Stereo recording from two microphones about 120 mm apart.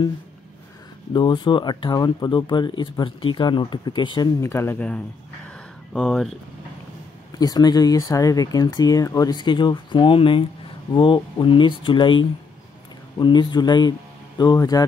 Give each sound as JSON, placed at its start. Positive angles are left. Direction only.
{"t": 1.1, "sound": "speech", "side_deg": 40}
{"t": 4.4, "sound": "speech", "side_deg": 20}
{"t": 5.9, "sound": "speech", "side_deg": 0}
{"t": 7.3, "sound": "speech", "side_deg": 35}